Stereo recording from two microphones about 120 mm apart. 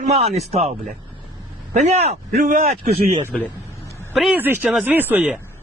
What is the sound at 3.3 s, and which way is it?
Speech, 5° left (ahead or behind).